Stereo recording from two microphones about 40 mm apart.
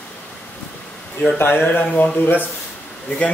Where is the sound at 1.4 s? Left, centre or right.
Left.